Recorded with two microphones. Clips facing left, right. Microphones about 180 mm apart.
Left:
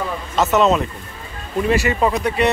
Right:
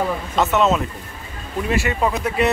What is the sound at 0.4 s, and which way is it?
Speech, centre (ahead or behind).